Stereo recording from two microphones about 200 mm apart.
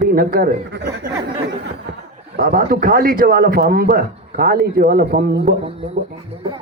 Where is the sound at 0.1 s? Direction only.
45° right (ahead or behind).